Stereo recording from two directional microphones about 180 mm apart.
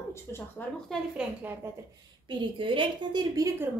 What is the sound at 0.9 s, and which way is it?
Speech, 10° right (ahead or behind).